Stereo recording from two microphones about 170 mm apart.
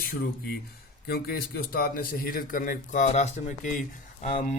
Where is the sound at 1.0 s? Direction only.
65° left (ahead or behind).